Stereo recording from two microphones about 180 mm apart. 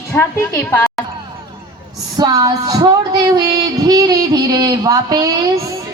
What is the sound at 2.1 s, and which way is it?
Female singing, 20° right (ahead or behind).